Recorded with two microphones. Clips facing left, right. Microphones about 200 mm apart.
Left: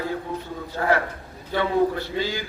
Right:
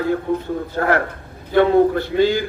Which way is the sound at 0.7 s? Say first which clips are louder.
Right 2 dB; 55° right (ahead or behind).